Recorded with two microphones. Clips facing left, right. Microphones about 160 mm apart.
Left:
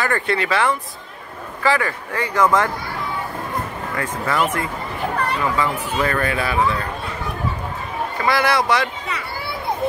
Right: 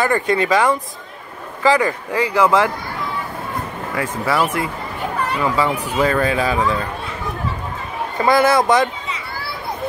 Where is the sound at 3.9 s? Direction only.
10° right (ahead or behind).